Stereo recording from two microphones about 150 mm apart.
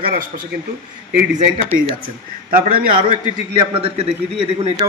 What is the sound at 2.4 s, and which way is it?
Speech, 70° right (ahead or behind).